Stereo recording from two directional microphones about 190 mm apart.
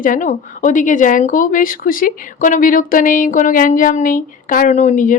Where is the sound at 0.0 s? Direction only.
45° left (ahead or behind).